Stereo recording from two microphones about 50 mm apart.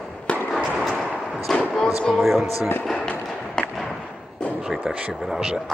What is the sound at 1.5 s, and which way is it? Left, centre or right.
Music, centre.